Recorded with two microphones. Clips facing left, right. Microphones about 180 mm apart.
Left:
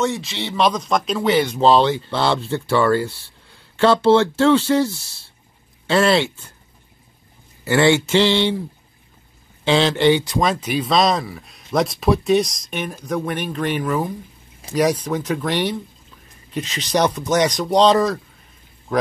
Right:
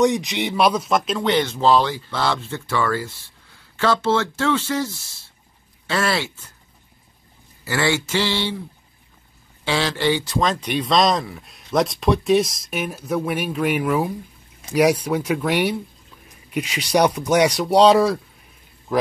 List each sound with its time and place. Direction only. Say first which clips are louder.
0.0 s speech: right 4 dB; 15° right (ahead or behind); by 6.4 s 25° left (ahead or behind)
7.6 s speech: left 6 dB; 25° left (ahead or behind)
9.7 s a man's voice: left 5 dB; 20° left (ahead or behind); by 19.1 s centre (ahead or behind)